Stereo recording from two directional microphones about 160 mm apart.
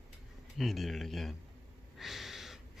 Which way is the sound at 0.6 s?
Centre (ahead or behind).